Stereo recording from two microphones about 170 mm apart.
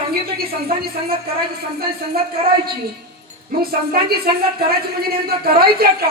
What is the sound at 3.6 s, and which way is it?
Speech, 65° right (ahead or behind).